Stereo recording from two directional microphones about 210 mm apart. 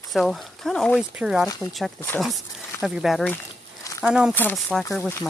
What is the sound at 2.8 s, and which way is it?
Speech, centre (ahead or behind).